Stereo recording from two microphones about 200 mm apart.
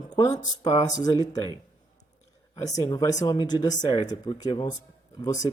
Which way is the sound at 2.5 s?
20° left (ahead or behind).